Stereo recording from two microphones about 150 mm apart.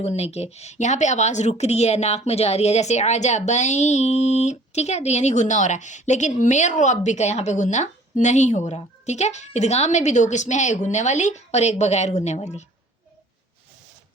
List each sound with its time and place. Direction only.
0.0 s a woman's voice: 45° left (ahead or behind)